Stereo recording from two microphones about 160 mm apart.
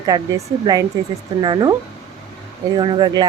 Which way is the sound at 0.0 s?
25° right (ahead or behind).